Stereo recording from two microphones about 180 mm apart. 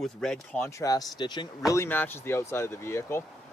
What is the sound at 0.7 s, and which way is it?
Speech, 20° left (ahead or behind).